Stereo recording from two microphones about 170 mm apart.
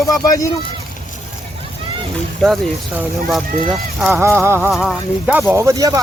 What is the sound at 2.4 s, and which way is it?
Speech, centre (ahead or behind).